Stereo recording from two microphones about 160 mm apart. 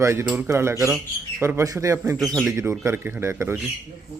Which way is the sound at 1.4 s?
15° right (ahead or behind).